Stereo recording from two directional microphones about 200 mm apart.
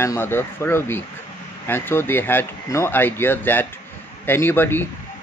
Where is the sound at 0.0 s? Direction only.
10° left (ahead or behind).